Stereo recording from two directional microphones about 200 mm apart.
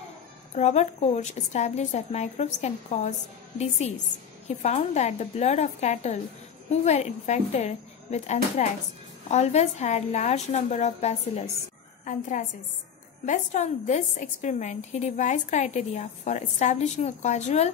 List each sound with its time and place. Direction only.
0.6 s a woman's voice: 35° left (ahead or behind)
4.5 s a woman's voice: 35° left (ahead or behind)